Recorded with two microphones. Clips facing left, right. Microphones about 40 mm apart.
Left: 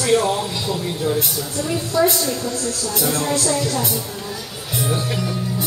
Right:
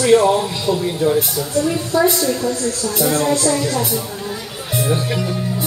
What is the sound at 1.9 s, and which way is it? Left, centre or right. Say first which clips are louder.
Speech: right 2 dB; centre.